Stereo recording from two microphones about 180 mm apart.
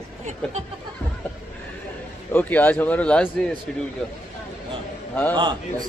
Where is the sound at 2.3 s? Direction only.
10° left (ahead or behind).